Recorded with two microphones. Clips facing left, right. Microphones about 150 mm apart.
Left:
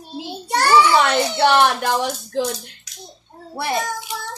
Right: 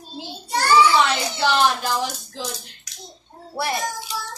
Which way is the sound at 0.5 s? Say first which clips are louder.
Left 2 dB; 60° left (ahead or behind).